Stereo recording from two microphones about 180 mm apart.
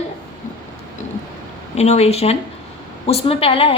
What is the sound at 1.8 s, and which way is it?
A woman's voice, 35° left (ahead or behind).